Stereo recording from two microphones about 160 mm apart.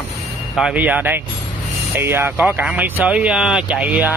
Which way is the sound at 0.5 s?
5° right (ahead or behind).